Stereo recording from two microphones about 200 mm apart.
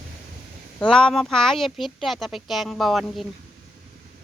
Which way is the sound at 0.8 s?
5° left (ahead or behind).